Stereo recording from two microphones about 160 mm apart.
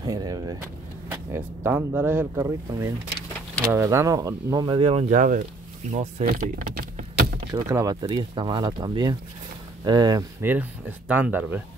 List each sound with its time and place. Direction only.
0.0 s vehicle: 25° right (ahead or behind)
1.1 s speech: 15° right (ahead or behind)
4.6 s speech: 35° right (ahead or behind)
6.6 s typing: 75° right (ahead or behind)
7.5 s speech: 20° right (ahead or behind)
10.4 s speech: 10° right (ahead or behind)